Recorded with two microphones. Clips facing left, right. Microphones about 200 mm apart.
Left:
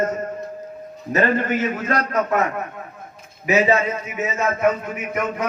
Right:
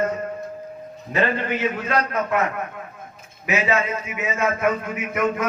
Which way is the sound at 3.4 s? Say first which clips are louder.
Left 4 dB; 35° left (ahead or behind).